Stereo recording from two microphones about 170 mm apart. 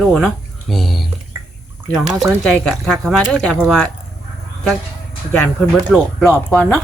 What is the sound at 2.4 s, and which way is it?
Speech, 5° left (ahead or behind).